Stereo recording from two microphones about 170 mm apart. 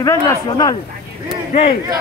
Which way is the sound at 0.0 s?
20° left (ahead or behind).